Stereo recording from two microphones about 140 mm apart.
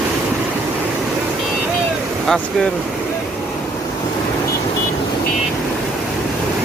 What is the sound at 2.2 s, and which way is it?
Speech, 5° left (ahead or behind).